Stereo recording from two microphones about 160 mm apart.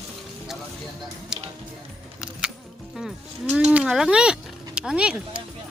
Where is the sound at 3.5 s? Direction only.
5° right (ahead or behind).